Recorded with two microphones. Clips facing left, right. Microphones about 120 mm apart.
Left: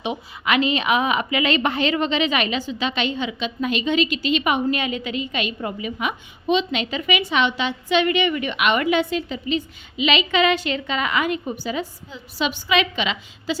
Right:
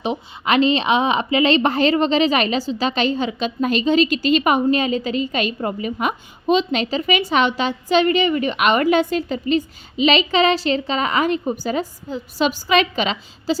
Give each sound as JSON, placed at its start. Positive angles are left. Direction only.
{"t": 0.0, "sound": "a woman's voice", "side_deg": -35}